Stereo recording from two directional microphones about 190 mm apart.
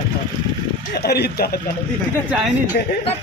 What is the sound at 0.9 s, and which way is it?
Speech, 55° left (ahead or behind).